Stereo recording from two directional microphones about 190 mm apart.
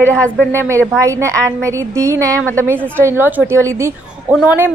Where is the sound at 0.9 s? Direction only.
15° right (ahead or behind).